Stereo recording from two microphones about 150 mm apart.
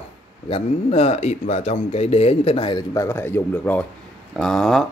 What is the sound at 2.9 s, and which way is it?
Speech, 20° left (ahead or behind).